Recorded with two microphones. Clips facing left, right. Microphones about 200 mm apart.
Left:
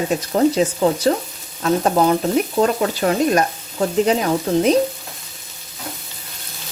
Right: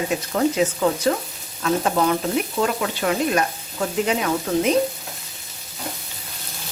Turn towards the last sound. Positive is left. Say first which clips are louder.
# left 4 dB
turn(degrees=35)  # may be behind; listen again after turning